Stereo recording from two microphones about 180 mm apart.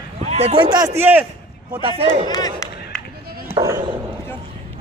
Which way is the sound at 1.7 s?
30° right (ahead or behind).